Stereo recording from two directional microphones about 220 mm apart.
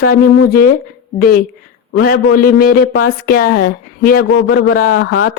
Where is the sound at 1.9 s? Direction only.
45° left (ahead or behind).